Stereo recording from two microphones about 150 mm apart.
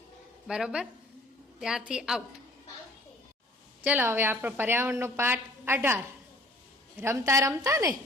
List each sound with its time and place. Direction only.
0.4 s a woman's voice: 5° right (ahead or behind)
3.8 s a woman's voice: 15° right (ahead or behind)